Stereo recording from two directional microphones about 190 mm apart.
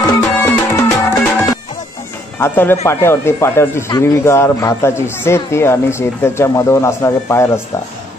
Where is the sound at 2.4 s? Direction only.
10° left (ahead or behind).